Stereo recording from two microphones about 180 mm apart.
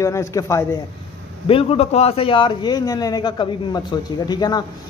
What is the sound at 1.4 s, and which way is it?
A man's voice, 30° left (ahead or behind).